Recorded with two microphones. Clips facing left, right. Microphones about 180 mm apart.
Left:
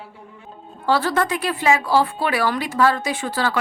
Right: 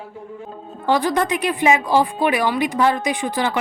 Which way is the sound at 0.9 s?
15° right (ahead or behind).